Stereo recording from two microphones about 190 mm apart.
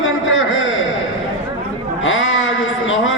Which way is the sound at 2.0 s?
90° left.